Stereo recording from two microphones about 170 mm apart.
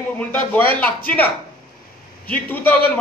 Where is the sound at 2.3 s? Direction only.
10° left (ahead or behind).